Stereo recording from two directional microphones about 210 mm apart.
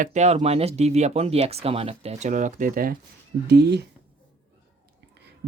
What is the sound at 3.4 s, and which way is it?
Speech, 55° right (ahead or behind).